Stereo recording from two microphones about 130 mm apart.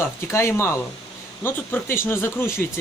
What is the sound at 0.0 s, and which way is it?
Speech, 20° left (ahead or behind).